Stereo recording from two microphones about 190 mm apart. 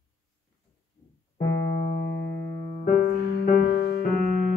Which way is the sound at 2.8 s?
45° left (ahead or behind).